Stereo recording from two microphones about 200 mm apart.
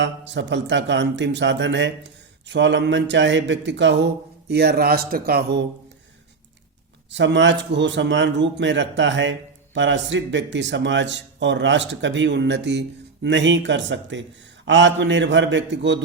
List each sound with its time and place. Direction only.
0.0 s a man's voice: 60° right (ahead or behind)
7.1 s a man's voice: 65° right (ahead or behind)